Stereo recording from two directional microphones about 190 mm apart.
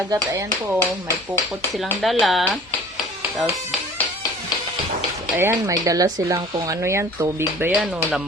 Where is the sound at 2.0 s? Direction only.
Centre (ahead or behind).